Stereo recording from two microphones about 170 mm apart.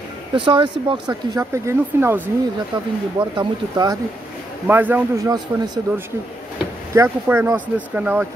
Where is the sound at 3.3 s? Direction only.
25° right (ahead or behind).